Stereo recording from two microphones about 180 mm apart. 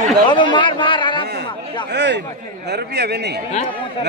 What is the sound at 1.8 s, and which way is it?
A man's voice, 70° right (ahead or behind).